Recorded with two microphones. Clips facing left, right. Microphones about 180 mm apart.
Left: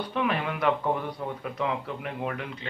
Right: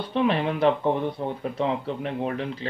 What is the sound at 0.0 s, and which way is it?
Speech, 30° right (ahead or behind).